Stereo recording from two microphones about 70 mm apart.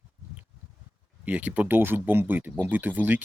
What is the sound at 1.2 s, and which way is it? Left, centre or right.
Speech, right.